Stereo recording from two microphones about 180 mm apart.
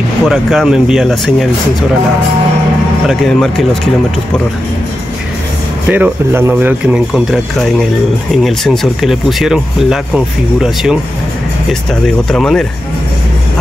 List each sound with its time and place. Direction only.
0.2 s speech: centre (ahead or behind)
3.1 s speech: centre (ahead or behind)
5.9 s speech: 10° right (ahead or behind)